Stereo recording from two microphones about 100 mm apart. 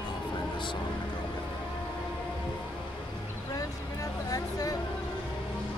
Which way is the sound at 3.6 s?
35° left (ahead or behind).